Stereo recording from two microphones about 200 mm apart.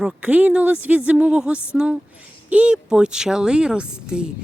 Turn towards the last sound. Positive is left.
turn(degrees=-5)  # may be behind; listen again after turning